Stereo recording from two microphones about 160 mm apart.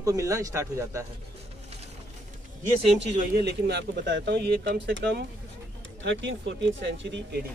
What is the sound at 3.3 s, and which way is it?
Speech, 90° right.